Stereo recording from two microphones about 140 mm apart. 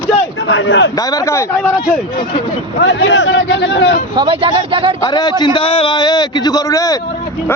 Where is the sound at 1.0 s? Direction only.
25° left (ahead or behind).